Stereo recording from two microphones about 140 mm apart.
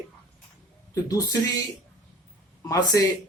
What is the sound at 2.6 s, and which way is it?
Speech, 25° left (ahead or behind).